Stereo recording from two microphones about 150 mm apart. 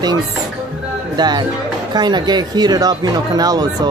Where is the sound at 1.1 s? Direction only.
30° right (ahead or behind).